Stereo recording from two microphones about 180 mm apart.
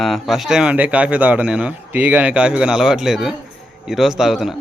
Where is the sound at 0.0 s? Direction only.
Centre (ahead or behind).